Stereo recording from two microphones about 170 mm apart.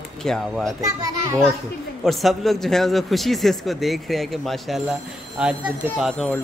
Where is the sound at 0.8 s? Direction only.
20° right (ahead or behind).